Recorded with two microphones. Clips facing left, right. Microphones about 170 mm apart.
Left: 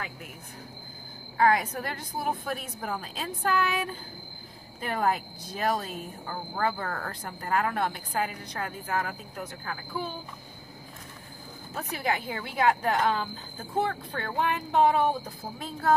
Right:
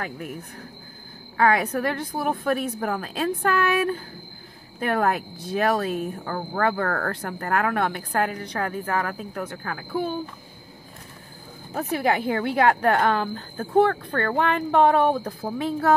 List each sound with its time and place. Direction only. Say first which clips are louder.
1.3 s speech: right 3 dB; 65° right (ahead or behind)
11.7 s speech: right 7 dB; 60° right (ahead or behind)